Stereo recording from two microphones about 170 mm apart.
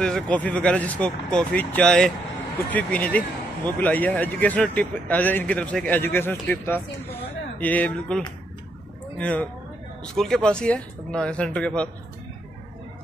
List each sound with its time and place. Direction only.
0.0 s speech: 5° left (ahead or behind)
9.2 s speech: 10° left (ahead or behind)